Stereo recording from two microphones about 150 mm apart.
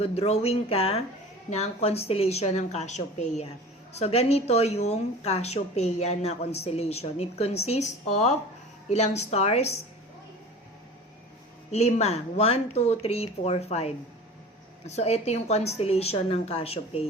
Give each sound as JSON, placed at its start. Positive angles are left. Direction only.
{"t": 0.0, "sound": "speech", "side_deg": 45}
{"t": 11.7, "sound": "speech", "side_deg": 45}